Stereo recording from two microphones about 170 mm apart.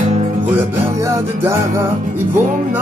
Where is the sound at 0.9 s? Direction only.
20° right (ahead or behind).